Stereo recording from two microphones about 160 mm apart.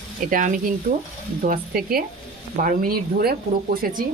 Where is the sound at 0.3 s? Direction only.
55° right (ahead or behind).